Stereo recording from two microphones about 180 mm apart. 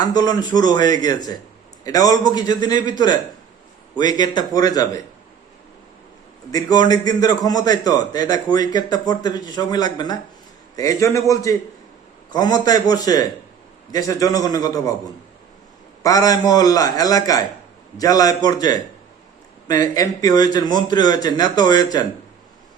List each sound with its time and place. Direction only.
0.0 s a man's voice: 20° left (ahead or behind)
3.9 s a man's voice: 25° left (ahead or behind)
6.5 s a man's voice: 20° left (ahead or behind)
16.0 s a man's voice: 20° left (ahead or behind)